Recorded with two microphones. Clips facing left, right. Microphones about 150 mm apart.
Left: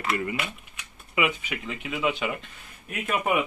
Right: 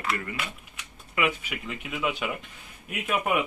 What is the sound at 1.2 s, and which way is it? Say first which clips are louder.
Speech: left 1 dB; centre (ahead or behind).